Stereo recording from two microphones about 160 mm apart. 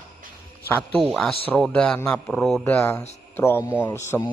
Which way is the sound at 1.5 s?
10° left (ahead or behind).